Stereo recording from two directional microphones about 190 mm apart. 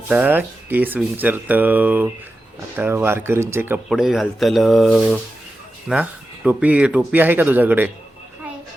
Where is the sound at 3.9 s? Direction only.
Centre (ahead or behind).